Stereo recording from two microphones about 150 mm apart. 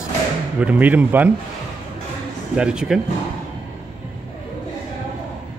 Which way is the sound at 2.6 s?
5° right (ahead or behind).